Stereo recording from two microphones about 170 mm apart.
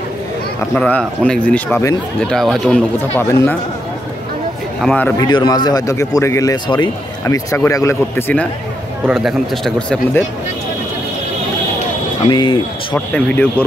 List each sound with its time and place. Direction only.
0.7 s speech: 10° left (ahead or behind)
2.1 s speech: 5° left (ahead or behind)
3.2 s speech: 15° left (ahead or behind)
4.8 s speech: 10° left (ahead or behind)
5.1 s a man's voice: 25° left (ahead or behind)
9.1 s speech: 5° left (ahead or behind)
12.3 s a man's voice: 30° left (ahead or behind)
12.9 s speech: 10° left (ahead or behind)